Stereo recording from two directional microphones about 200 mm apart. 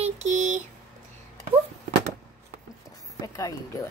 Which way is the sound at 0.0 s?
35° right (ahead or behind).